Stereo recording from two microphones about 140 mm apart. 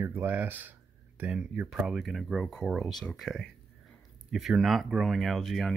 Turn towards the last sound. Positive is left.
turn(degrees=0)  # may be behind; listen again after turning